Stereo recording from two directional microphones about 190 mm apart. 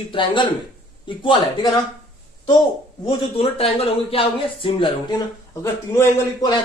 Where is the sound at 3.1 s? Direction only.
30° left (ahead or behind); by 6.2 s 15° left (ahead or behind).